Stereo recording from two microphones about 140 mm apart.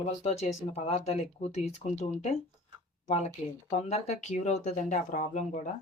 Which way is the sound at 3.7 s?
50° left (ahead or behind).